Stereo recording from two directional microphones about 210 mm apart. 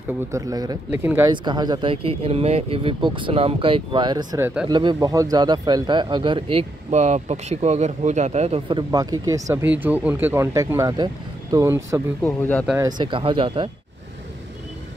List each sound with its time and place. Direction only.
0.3 s a man's voice: 15° right (ahead or behind)
4.6 s a man's voice: 20° right (ahead or behind)
12.2 s a man's voice: 10° left (ahead or behind)
12.7 s a man's voice: 20° right (ahead or behind)